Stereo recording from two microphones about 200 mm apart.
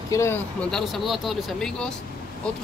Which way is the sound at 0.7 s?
Centre (ahead or behind).